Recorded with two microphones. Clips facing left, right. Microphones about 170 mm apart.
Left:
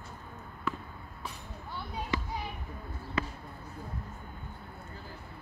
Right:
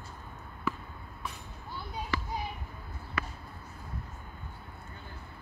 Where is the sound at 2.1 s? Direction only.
20° left (ahead or behind).